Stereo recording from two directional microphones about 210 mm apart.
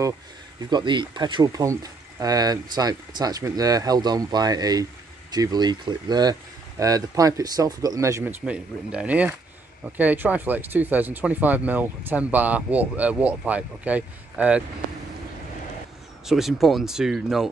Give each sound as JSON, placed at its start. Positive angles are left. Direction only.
{"t": 0.6, "sound": "speech", "side_deg": -20}
{"t": 16.3, "sound": "speech", "side_deg": 0}